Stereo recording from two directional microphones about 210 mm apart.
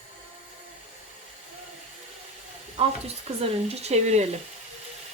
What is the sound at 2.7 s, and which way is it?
Speech, 30° right (ahead or behind).